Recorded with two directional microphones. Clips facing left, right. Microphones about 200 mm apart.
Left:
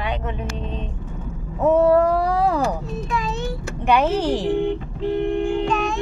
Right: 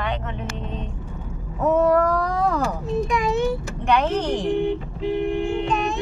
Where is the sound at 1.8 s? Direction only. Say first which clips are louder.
Left 3 dB; 30° left (ahead or behind).